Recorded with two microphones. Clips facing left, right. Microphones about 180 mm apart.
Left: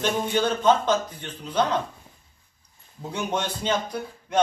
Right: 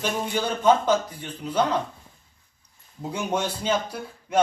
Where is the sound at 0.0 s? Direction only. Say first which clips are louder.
Left 3 dB; 10° right (ahead or behind).